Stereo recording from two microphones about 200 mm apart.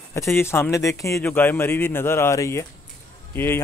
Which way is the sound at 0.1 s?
10° left (ahead or behind).